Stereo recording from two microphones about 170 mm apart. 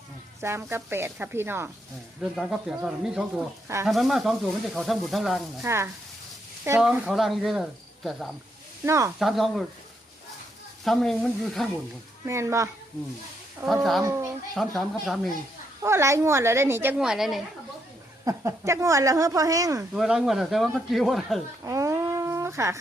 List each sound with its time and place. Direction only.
0.4 s a woman's voice: 15° right (ahead or behind)
2.3 s speech: centre (ahead or behind)
5.6 s a woman's voice: 15° right (ahead or behind)
8.9 s a woman's voice: 15° right (ahead or behind)
9.1 s speech: centre (ahead or behind)
10.8 s speech: centre (ahead or behind)
12.2 s a woman's voice: 15° right (ahead or behind)
14.0 s a woman's voice: 15° right (ahead or behind)
14.5 s speech: centre (ahead or behind)
15.8 s a woman's voice: 15° right (ahead or behind)
18.3 s a woman's voice: 20° right (ahead or behind)
19.9 s speech: 5° right (ahead or behind)
21.6 s a sound: 20° right (ahead or behind)